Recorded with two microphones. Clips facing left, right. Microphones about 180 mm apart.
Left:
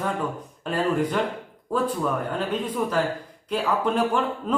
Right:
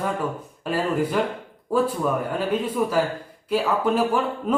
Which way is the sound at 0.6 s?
5° right (ahead or behind).